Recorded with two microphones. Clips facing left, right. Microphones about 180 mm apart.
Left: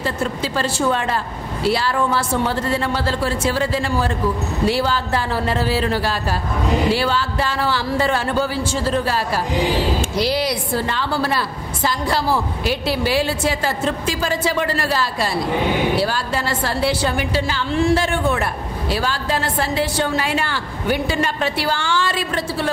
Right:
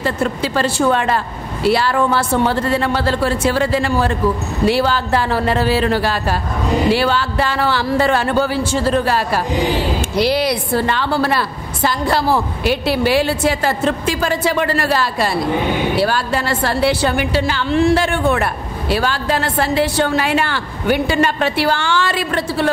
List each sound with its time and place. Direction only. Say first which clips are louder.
0.0 s a woman's voice: right 4 dB; 65° right (ahead or behind)